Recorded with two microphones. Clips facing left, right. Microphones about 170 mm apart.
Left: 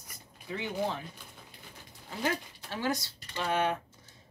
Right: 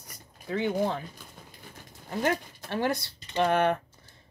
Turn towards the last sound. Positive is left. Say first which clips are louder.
# right 6 dB
turn(degrees=-55)  # may be behind; listen again after turning